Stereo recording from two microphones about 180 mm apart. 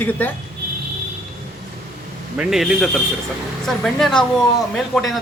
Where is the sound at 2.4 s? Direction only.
Centre (ahead or behind).